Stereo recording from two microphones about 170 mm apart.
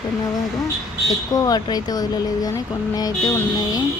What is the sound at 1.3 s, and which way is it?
Speech, 20° left (ahead or behind).